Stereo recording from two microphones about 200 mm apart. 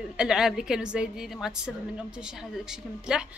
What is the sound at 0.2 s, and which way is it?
A woman's voice, centre (ahead or behind).